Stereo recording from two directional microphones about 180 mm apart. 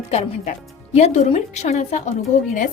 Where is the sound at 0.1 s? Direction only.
35° left (ahead or behind).